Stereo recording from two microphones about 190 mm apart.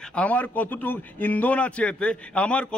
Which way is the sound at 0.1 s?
5° left (ahead or behind).